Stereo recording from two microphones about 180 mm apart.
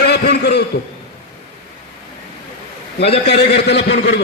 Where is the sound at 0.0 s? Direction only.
60° left (ahead or behind).